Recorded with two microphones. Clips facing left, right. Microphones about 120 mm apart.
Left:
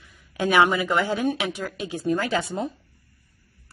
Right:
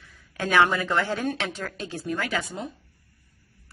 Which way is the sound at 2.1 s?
30° left (ahead or behind).